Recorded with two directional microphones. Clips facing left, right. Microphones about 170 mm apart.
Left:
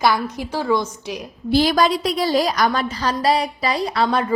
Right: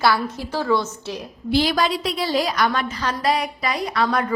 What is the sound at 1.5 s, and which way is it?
A woman's voice, 40° left (ahead or behind).